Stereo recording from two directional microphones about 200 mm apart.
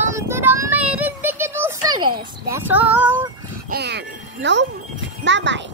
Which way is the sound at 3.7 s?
55° right (ahead or behind).